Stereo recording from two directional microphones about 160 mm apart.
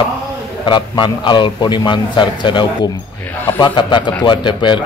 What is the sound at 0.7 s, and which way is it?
A man's voice, 30° left (ahead or behind).